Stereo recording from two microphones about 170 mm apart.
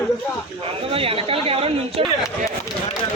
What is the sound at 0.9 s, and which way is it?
Speech, 35° right (ahead or behind).